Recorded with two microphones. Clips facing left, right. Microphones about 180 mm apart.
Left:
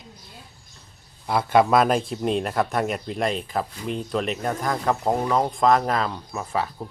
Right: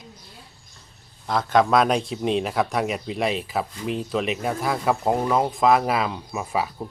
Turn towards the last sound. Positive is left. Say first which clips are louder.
# right 1 dB
turn(degrees=-10)  # may be behind; listen again after turning